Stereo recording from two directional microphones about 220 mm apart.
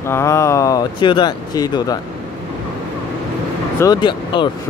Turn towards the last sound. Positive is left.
turn(degrees=20)  # may be behind; listen again after turning